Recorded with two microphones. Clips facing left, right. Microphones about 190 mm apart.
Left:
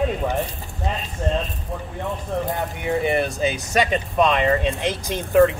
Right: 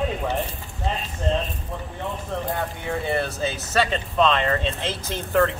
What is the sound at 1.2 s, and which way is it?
Speech, 15° left (ahead or behind).